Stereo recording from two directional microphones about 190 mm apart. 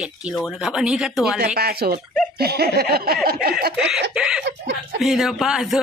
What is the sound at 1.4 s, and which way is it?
Speech, 55° right (ahead or behind).